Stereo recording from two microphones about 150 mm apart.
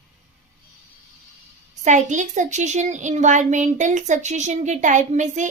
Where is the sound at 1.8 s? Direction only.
55° right (ahead or behind).